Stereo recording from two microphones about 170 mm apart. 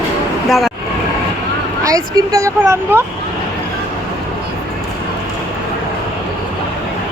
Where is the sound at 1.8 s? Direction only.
20° right (ahead or behind).